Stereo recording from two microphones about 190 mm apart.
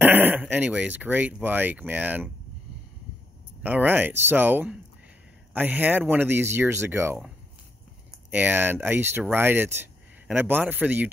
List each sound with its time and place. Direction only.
0.0 s speech: 10° right (ahead or behind)
3.6 s speech: 10° right (ahead or behind)
8.3 s speech: 10° right (ahead or behind)